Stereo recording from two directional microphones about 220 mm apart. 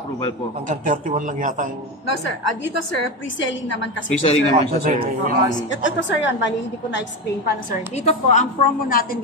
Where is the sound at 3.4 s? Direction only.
55° left (ahead or behind).